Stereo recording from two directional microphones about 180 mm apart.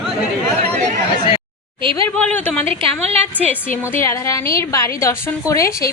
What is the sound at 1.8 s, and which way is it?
Speech, 30° right (ahead or behind).